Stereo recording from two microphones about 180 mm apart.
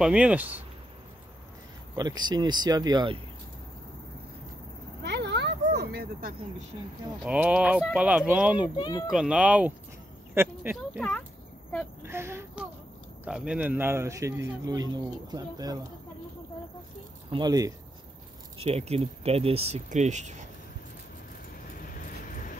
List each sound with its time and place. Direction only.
0.0 s a man's voice: 5° right (ahead or behind)
2.0 s speech: 25° right (ahead or behind)
5.0 s a sound: 70° right (ahead or behind)
7.2 s a man's voice: 10° right (ahead or behind)
8.7 s a child's voice: 20° left (ahead or behind)
9.1 s a man's voice: 5° right (ahead or behind)
11.0 s speech: 10° left (ahead or behind)
12.0 s a man's voice: 15° right (ahead or behind)
17.3 s speech: 20° right (ahead or behind)
18.6 s speech: 35° right (ahead or behind)
21.8 s vehicle: 50° left (ahead or behind)